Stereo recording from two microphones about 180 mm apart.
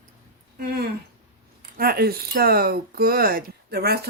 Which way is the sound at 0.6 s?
55° right (ahead or behind).